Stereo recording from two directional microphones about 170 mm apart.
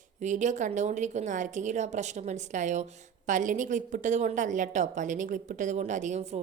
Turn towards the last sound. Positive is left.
turn(degrees=-45)  # may be behind; listen again after turning